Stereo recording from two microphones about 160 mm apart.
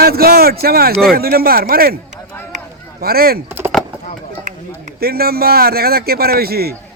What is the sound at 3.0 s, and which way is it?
Speech, 70° right (ahead or behind).